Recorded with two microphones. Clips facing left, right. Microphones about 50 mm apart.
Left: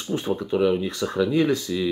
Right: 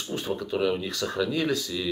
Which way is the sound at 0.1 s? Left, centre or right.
Centre.